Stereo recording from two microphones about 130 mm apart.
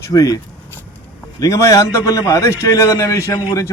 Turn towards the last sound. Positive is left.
turn(degrees=25)  # may be behind; listen again after turning